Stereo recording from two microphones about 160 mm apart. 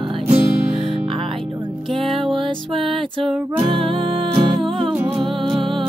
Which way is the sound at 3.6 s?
35° right (ahead or behind).